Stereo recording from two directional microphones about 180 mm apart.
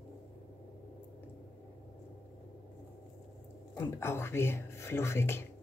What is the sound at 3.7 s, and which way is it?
Speech, 15° left (ahead or behind).